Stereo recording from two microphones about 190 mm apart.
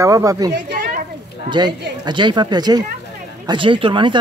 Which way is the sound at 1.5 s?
25° right (ahead or behind).